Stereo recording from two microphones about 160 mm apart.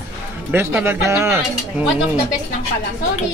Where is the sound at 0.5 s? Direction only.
15° right (ahead or behind).